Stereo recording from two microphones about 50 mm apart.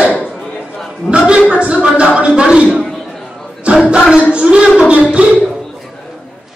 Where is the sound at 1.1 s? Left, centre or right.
Right.